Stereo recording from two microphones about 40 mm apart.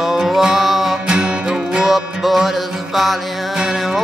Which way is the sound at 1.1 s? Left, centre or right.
Right.